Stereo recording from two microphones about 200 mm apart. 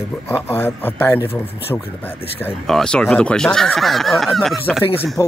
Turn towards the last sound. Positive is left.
turn(degrees=15)  # may be behind; listen again after turning